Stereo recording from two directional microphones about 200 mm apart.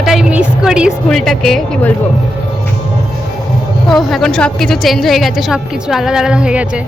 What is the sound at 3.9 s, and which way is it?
A woman's voice, centre (ahead or behind).